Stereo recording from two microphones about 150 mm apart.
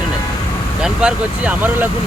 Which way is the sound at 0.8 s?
5° right (ahead or behind).